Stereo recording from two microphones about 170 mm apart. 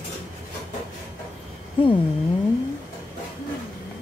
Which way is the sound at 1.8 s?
30° left (ahead or behind).